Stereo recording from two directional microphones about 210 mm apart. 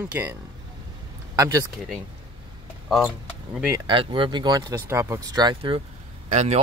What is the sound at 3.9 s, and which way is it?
Speech, 25° right (ahead or behind).